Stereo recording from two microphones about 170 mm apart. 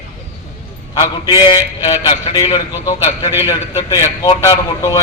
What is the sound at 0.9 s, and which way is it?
A man's voice, 25° left (ahead or behind).